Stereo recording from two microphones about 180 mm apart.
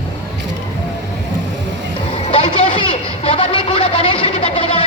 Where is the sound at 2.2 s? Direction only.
35° left (ahead or behind).